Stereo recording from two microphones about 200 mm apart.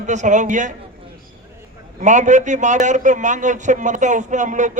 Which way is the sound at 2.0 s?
40° right (ahead or behind).